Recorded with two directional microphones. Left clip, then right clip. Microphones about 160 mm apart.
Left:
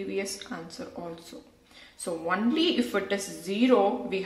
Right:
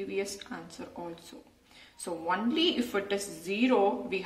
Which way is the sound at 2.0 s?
25° left (ahead or behind).